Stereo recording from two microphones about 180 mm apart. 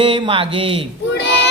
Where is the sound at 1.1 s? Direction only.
75° left (ahead or behind).